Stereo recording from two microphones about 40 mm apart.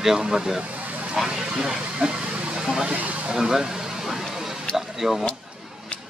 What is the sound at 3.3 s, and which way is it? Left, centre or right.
Speech, centre.